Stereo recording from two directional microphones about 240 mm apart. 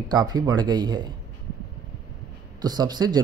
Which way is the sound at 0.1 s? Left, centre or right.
Centre.